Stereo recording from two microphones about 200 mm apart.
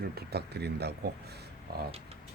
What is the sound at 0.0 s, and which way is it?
Speech, 55° right (ahead or behind).